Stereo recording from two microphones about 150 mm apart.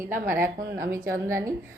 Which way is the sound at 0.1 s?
15° right (ahead or behind).